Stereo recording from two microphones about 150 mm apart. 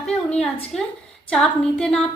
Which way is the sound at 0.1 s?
5° left (ahead or behind).